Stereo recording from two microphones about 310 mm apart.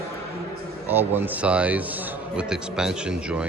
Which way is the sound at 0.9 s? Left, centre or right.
Centre.